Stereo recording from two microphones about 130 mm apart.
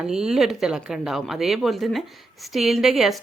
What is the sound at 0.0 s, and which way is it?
Speech, 5° right (ahead or behind).